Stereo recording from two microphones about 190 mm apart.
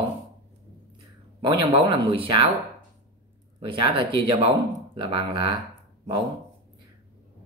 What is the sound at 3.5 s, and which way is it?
A man's voice, 25° right (ahead or behind).